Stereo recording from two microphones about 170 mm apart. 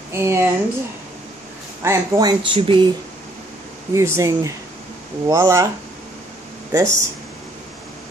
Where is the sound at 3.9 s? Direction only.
15° right (ahead or behind).